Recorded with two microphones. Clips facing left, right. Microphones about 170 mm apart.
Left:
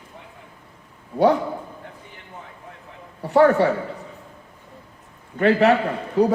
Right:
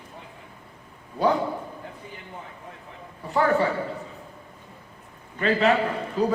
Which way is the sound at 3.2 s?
75° left (ahead or behind).